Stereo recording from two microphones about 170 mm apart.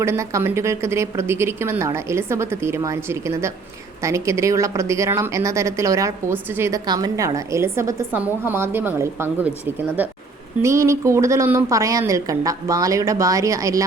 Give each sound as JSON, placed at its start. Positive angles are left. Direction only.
{"t": 0.0, "sound": "a woman's voice", "side_deg": -15}